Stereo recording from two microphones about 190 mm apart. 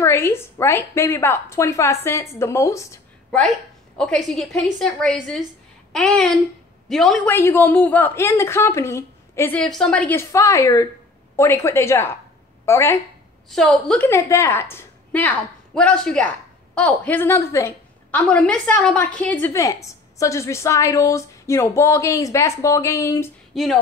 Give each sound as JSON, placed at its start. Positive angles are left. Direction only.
{"t": 0.0, "sound": "a woman's voice", "side_deg": 15}
{"t": 3.3, "sound": "a woman's voice", "side_deg": 0}
{"t": 7.3, "sound": "a woman's voice", "side_deg": 10}
{"t": 13.5, "sound": "a woman's voice", "side_deg": 5}
{"t": 23.5, "sound": "a woman's voice", "side_deg": 0}